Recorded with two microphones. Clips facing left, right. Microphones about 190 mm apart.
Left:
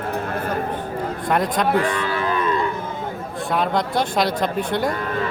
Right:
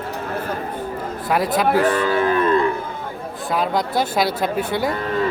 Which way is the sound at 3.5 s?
Centre (ahead or behind).